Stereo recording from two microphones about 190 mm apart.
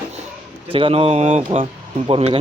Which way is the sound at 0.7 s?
30° right (ahead or behind).